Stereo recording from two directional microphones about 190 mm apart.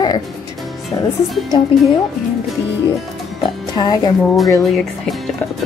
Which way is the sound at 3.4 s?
20° left (ahead or behind).